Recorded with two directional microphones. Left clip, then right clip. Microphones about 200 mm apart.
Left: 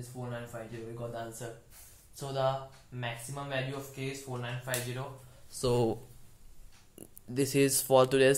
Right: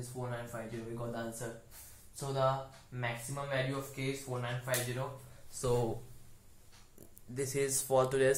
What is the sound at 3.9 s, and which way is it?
Speech, 35° left (ahead or behind).